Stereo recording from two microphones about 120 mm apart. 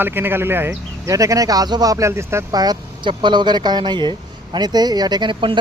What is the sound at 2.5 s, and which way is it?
Speech, 35° right (ahead or behind).